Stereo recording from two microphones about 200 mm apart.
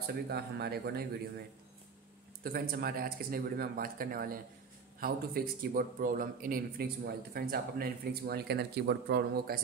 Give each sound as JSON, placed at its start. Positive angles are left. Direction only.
{"t": 0.0, "sound": "a man's voice", "side_deg": -55}
{"t": 2.4, "sound": "a man's voice", "side_deg": -50}